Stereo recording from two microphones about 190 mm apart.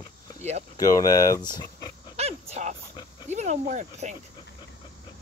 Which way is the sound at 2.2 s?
35° right (ahead or behind).